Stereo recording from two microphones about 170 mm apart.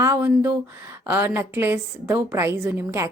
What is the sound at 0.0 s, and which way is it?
A woman's voice, 10° right (ahead or behind).